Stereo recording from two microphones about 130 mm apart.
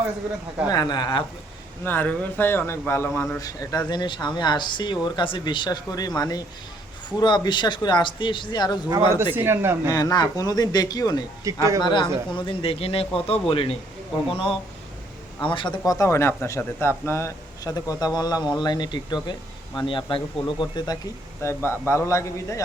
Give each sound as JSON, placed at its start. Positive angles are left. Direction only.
{"t": 0.7, "sound": "speech", "side_deg": 30}
{"t": 1.8, "sound": "speech", "side_deg": 15}
{"t": 9.3, "sound": "speech", "side_deg": -15}
{"t": 9.9, "sound": "a man's voice", "side_deg": 30}
{"t": 11.5, "sound": "speech", "side_deg": -25}
{"t": 11.8, "sound": "speech", "side_deg": 35}
{"t": 15.9, "sound": "a man's voice", "side_deg": 25}
{"t": 21.4, "sound": "a man's voice", "side_deg": 20}